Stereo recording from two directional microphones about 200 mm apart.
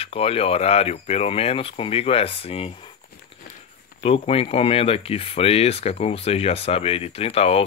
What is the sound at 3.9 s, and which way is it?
Speech, 30° left (ahead or behind).